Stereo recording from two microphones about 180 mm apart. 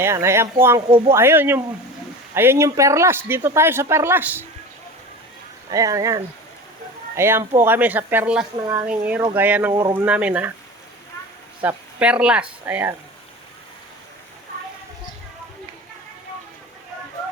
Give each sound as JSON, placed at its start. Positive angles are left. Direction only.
{"t": 0.0, "sound": "speech", "side_deg": -15}
{"t": 0.9, "sound": "speech", "side_deg": -30}
{"t": 1.1, "sound": "speech", "side_deg": -15}
{"t": 5.7, "sound": "speech", "side_deg": -20}
{"t": 11.6, "sound": "speech", "side_deg": -5}